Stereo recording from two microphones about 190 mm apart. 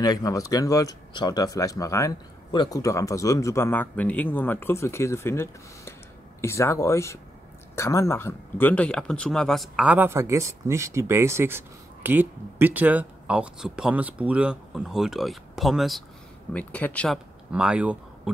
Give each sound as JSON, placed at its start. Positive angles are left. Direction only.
{"t": 0.0, "sound": "speech", "side_deg": 20}
{"t": 17.5, "sound": "speech", "side_deg": -5}